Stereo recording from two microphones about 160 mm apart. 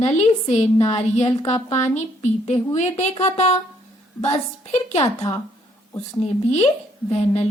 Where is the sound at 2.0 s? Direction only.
45° left (ahead or behind).